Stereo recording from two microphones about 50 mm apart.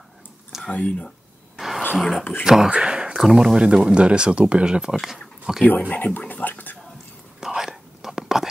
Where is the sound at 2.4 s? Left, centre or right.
Centre.